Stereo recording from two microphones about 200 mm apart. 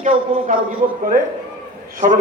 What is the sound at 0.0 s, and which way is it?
Speech, 35° right (ahead or behind).